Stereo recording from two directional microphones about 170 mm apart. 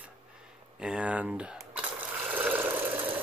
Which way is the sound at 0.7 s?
5° right (ahead or behind).